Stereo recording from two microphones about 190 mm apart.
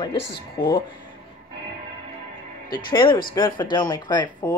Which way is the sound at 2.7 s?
25° left (ahead or behind).